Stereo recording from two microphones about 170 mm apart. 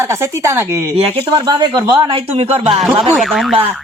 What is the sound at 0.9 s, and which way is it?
Speech, 35° right (ahead or behind).